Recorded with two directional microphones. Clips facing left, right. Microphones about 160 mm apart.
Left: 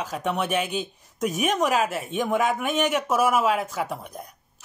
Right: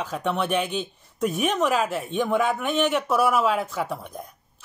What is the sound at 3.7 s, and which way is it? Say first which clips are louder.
Speech: right 1 dB; 40° left (ahead or behind).